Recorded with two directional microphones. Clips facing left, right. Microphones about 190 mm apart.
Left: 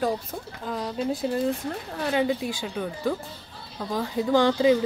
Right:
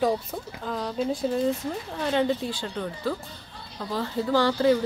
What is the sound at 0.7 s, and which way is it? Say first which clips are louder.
A woman's voice: even; centre (ahead or behind).